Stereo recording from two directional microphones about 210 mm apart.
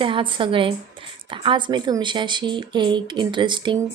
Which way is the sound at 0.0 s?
25° right (ahead or behind).